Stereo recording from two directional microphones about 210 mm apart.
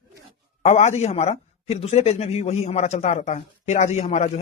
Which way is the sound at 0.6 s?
30° left (ahead or behind).